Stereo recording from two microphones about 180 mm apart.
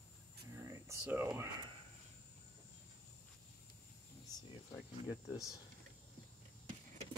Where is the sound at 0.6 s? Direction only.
15° right (ahead or behind).